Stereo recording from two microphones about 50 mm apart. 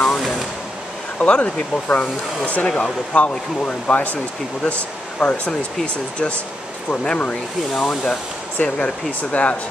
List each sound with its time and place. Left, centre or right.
0.2 s a sound: centre
1.2 s speech: left
6.9 s speech: left
7.7 s speech: centre
8.6 s speech: left